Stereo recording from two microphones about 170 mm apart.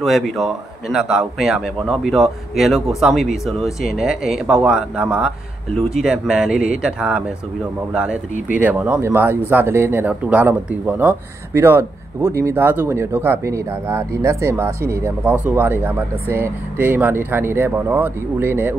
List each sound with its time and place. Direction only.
0.0 s a man's voice: centre (ahead or behind)